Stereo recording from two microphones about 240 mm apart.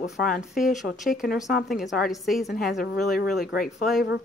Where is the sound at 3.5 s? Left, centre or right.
Left.